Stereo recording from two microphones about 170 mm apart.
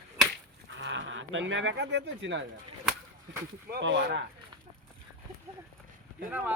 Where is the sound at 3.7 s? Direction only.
90° right.